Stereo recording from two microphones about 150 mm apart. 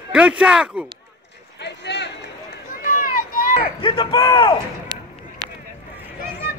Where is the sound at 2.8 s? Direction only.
70° left (ahead or behind).